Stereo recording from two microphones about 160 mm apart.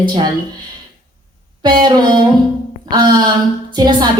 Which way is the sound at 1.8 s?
25° right (ahead or behind).